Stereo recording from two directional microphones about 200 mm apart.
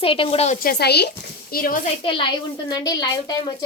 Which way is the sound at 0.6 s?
55° left (ahead or behind).